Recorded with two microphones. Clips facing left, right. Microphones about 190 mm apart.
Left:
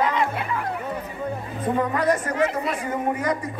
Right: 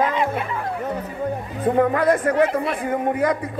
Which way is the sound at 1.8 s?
55° right (ahead or behind).